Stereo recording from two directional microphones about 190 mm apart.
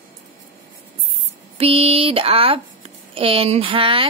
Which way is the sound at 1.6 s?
30° right (ahead or behind).